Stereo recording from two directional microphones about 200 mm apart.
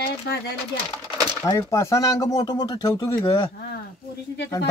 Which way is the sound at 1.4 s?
15° left (ahead or behind).